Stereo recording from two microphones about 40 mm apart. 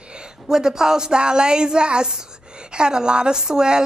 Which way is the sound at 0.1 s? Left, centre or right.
Centre.